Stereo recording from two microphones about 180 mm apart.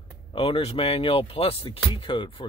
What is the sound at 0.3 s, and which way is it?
Speech, 30° left (ahead or behind).